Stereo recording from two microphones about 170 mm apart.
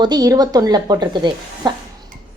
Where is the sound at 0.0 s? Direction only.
25° right (ahead or behind).